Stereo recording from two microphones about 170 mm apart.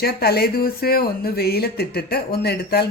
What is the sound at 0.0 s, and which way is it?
Speech, 65° left (ahead or behind).